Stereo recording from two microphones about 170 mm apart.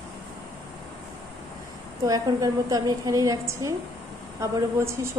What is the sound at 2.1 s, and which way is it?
A woman's voice, 20° right (ahead or behind).